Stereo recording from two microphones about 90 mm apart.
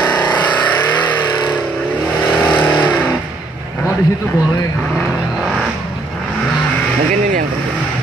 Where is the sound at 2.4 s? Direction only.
15° left (ahead or behind).